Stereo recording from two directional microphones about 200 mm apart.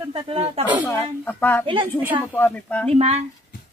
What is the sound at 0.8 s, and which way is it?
Speech, 10° left (ahead or behind).